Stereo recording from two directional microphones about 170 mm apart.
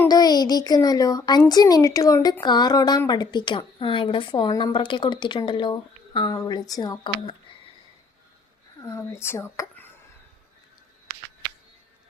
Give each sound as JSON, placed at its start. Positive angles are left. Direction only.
{"t": 0.0, "sound": "a woman's voice", "side_deg": 20}
{"t": 8.8, "sound": "speech", "side_deg": 15}